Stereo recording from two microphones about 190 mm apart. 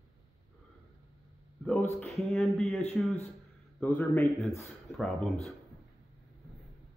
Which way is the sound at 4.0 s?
10° left (ahead or behind).